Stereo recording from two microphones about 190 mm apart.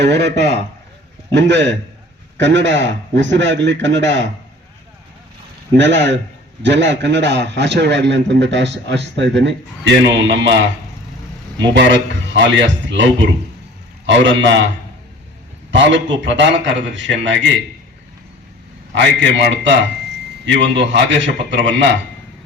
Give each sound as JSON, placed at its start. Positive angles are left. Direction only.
{"t": 0.0, "sound": "a man's voice", "side_deg": -65}
{"t": 5.7, "sound": "a man's voice", "side_deg": -70}
{"t": 11.7, "sound": "a man's voice", "side_deg": -70}
{"t": 14.1, "sound": "a man's voice", "side_deg": -70}
{"t": 15.7, "sound": "a man's voice", "side_deg": -70}
{"t": 18.9, "sound": "a man's voice", "side_deg": -75}